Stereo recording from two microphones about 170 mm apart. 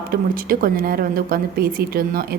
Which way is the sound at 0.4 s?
60° right (ahead or behind).